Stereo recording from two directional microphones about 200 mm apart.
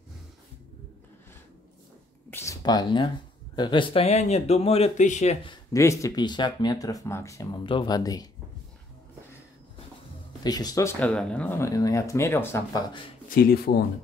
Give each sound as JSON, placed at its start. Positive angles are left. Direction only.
{"t": 2.3, "sound": "a sound", "side_deg": 15}
{"t": 3.5, "sound": "speech", "side_deg": 25}
{"t": 10.4, "sound": "speech", "side_deg": 20}